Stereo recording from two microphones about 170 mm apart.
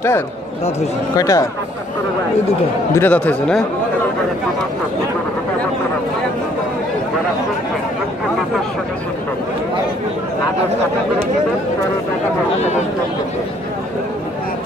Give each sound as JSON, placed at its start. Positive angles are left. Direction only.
{"t": 1.1, "sound": "speech", "side_deg": 20}
{"t": 3.0, "sound": "speech", "side_deg": 10}